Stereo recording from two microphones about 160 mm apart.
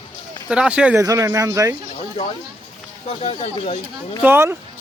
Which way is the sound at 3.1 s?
40° left (ahead or behind).